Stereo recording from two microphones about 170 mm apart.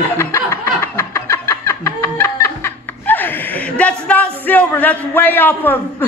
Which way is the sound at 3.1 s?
10° left (ahead or behind).